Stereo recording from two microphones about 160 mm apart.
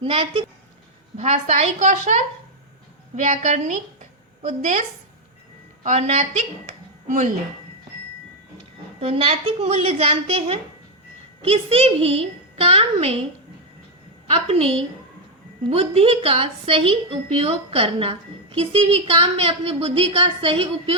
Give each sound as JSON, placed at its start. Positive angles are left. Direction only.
{"t": 0.0, "sound": "a woman's voice", "side_deg": -35}
{"t": 1.1, "sound": "a woman's voice", "side_deg": -45}
{"t": 5.8, "sound": "speech", "side_deg": -45}
{"t": 9.0, "sound": "a woman's voice", "side_deg": -35}
{"t": 14.3, "sound": "a woman's voice", "side_deg": -40}